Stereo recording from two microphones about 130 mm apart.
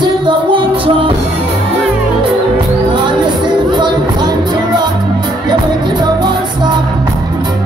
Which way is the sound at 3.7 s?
35° right (ahead or behind).